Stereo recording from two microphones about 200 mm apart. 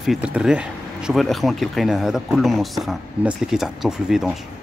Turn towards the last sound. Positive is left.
turn(degrees=0)  # may be behind; listen again after turning